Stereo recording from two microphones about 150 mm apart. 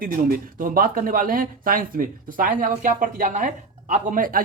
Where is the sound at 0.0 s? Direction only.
75° right (ahead or behind).